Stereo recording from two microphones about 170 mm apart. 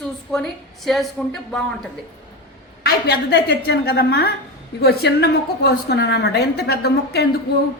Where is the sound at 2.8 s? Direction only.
70° left (ahead or behind).